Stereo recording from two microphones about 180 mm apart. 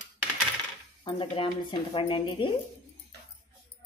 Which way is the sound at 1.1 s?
30° left (ahead or behind).